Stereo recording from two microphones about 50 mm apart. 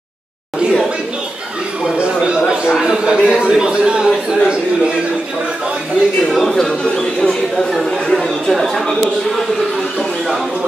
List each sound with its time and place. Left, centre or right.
2.2 s chatter: centre
2.7 s a man's voice: centre
6.2 s speech: centre